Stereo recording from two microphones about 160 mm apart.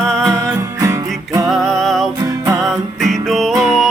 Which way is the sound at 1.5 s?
Centre (ahead or behind).